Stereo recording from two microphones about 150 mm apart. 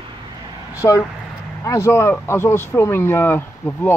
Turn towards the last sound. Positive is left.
turn(degrees=15)  # may be behind; listen again after turning